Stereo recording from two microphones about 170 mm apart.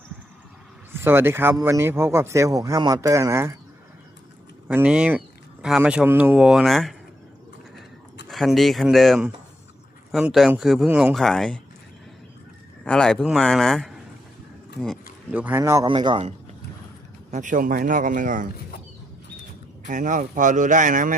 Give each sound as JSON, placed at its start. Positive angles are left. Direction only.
{"t": 0.9, "sound": "speech", "side_deg": -15}
{"t": 4.7, "sound": "speech", "side_deg": -10}
{"t": 8.3, "sound": "speech", "side_deg": 0}
{"t": 12.8, "sound": "speech", "side_deg": 5}
{"t": 15.3, "sound": "speech", "side_deg": -10}
{"t": 15.9, "sound": "a man's voice", "side_deg": -30}
{"t": 17.3, "sound": "speech", "side_deg": -50}
{"t": 19.9, "sound": "speech", "side_deg": -45}